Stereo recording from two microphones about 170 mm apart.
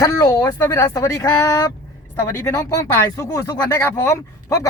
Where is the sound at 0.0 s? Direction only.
20° left (ahead or behind).